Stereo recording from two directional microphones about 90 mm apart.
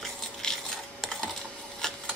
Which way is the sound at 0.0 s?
5° left (ahead or behind).